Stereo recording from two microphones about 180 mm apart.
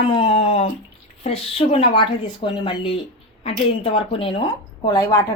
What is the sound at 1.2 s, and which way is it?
A woman's voice, 30° left (ahead or behind).